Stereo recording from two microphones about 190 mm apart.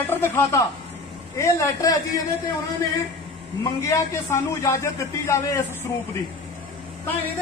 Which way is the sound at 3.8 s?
15° left (ahead or behind).